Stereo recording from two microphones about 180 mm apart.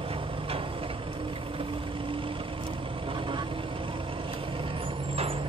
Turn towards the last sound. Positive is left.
turn(degrees=-30)  # may be behind; listen again after turning